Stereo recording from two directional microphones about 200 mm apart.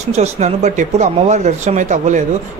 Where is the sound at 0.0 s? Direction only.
35° right (ahead or behind).